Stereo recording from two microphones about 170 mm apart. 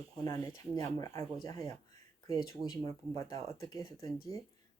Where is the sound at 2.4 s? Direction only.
20° left (ahead or behind).